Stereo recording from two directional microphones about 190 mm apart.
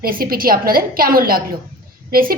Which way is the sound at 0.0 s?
50° right (ahead or behind).